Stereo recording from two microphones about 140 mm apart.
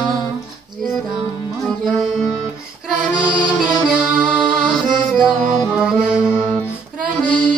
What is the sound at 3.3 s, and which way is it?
Music, 10° left (ahead or behind).